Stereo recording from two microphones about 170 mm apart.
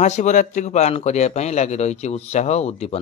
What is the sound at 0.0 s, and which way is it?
Speech, 45° left (ahead or behind).